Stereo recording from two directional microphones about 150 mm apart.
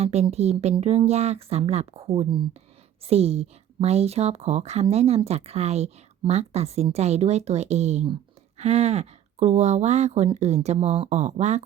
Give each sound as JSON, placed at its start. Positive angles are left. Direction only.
{"t": 0.0, "sound": "speech", "side_deg": -45}